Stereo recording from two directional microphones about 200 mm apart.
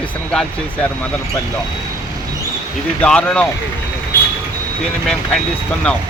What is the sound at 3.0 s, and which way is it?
Speech, 5° left (ahead or behind).